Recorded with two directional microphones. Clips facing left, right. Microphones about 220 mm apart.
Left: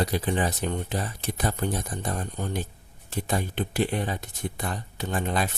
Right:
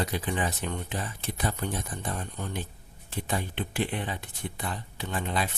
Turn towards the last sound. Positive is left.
turn(degrees=45)  # may be behind; listen again after turning